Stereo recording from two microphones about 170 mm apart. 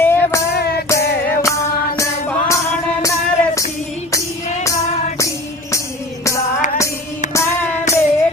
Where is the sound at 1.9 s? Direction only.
15° left (ahead or behind).